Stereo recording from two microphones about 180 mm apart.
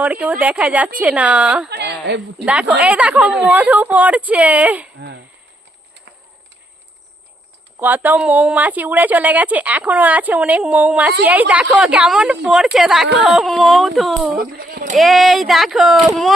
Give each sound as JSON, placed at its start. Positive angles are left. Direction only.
{"t": 0.0, "sound": "a woman's voice", "side_deg": -10}
{"t": 1.7, "sound": "a sound", "side_deg": -70}
{"t": 2.4, "sound": "a woman's voice", "side_deg": -5}
{"t": 4.9, "sound": "speech", "side_deg": -70}
{"t": 7.8, "sound": "a woman's voice", "side_deg": -10}
{"t": 14.3, "sound": "speech", "side_deg": -55}
{"t": 14.9, "sound": "speech", "side_deg": 0}